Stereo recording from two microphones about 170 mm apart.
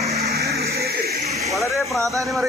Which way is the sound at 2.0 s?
20° right (ahead or behind).